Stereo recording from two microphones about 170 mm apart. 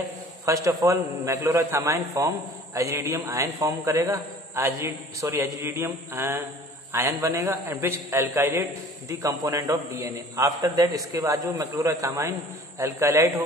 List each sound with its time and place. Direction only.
0.5 s a man's voice: 20° right (ahead or behind)